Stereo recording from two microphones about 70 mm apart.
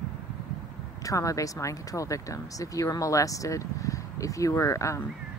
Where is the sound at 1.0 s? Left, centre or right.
Left.